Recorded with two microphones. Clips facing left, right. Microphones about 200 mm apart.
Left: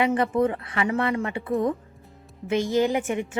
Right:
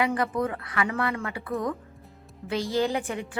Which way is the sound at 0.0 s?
25° left (ahead or behind).